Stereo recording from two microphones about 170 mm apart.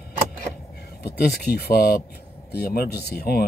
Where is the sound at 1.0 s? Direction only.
65° left (ahead or behind).